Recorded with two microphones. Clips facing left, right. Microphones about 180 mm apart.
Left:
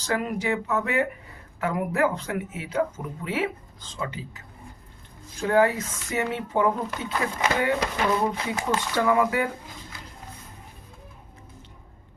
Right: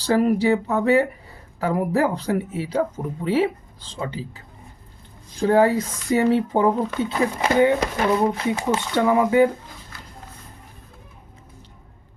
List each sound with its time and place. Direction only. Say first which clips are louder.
0.0 s speech: right 9 dB; 35° right (ahead or behind)